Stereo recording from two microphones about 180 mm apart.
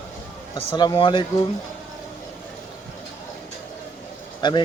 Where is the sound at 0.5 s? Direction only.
25° left (ahead or behind).